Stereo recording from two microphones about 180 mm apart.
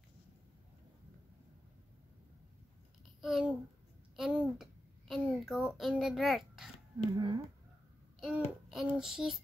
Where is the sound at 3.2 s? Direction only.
5° right (ahead or behind).